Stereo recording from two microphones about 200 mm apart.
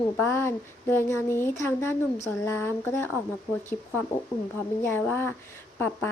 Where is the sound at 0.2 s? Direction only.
10° left (ahead or behind).